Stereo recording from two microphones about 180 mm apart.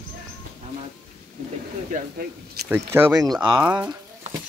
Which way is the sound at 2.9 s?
15° right (ahead or behind).